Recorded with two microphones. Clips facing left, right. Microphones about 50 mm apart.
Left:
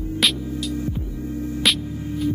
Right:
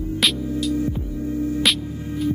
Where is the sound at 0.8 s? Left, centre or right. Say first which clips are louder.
Right 3 dB; right.